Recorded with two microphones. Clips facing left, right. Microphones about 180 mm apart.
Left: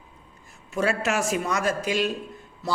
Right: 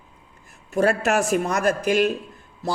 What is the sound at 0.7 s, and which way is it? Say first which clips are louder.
Speech: right 5 dB; 45° right (ahead or behind).